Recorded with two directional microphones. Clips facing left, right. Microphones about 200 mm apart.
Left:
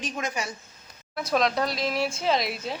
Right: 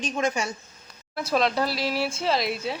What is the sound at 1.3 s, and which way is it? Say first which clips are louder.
Speech: right 1 dB; 5° right (ahead or behind).